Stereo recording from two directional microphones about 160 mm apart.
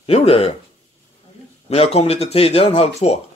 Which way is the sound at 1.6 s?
40° left (ahead or behind).